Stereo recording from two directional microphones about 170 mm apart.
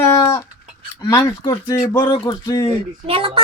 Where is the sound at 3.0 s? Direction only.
35° right (ahead or behind).